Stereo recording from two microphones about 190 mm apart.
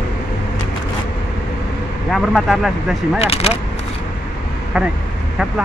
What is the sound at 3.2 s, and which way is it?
Speech, 30° left (ahead or behind).